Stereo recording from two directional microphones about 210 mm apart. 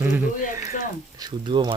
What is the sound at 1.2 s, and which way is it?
Speech, 20° right (ahead or behind).